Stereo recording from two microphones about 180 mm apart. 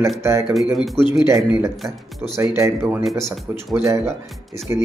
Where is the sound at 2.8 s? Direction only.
Centre (ahead or behind).